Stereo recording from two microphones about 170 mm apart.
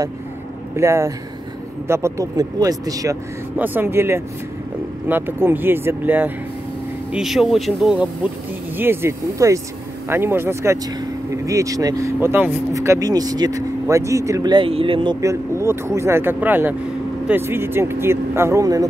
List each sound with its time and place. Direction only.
0.7 s speech: 15° right (ahead or behind)
15.1 s speech: 15° right (ahead or behind)